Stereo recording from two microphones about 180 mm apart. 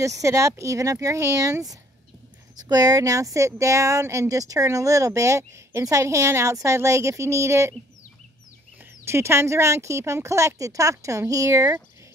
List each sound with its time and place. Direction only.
0.0 s speech: 15° right (ahead or behind)
9.0 s speech: 15° right (ahead or behind)